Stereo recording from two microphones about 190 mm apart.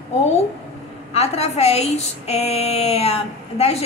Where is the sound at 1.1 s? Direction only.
35° left (ahead or behind).